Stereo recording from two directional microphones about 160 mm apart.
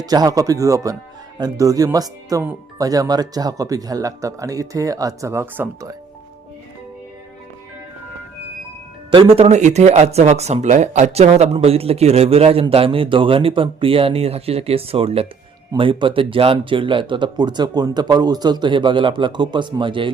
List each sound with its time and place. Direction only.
0.0 s speech: 25° right (ahead or behind)
9.0 s speech: 30° right (ahead or behind)